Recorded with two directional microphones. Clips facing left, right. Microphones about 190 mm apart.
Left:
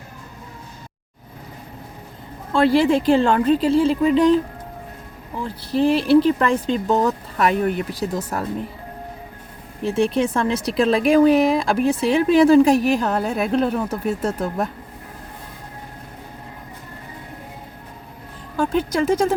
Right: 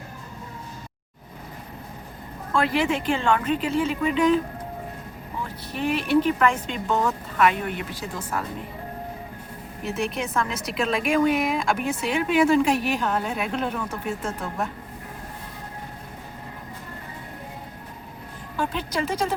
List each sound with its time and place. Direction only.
2.5 s a woman's voice: 30° left (ahead or behind)
5.4 s a woman's voice: 30° left (ahead or behind)
9.8 s a woman's voice: 30° left (ahead or behind)
18.5 s speech: 45° left (ahead or behind)